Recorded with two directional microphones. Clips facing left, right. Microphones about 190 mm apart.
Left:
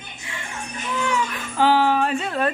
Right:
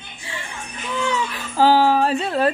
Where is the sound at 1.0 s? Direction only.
30° right (ahead or behind).